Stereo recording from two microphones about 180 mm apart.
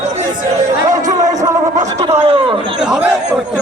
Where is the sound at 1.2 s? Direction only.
20° right (ahead or behind).